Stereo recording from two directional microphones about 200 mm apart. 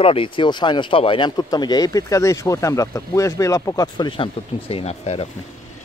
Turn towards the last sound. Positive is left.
turn(degrees=30)  # may be behind; listen again after turning